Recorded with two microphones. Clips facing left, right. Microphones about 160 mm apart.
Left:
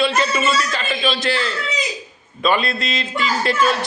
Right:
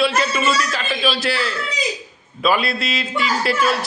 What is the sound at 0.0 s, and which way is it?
A man's voice, centre (ahead or behind).